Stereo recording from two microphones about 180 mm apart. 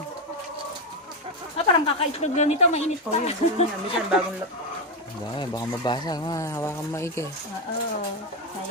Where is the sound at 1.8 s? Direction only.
35° left (ahead or behind).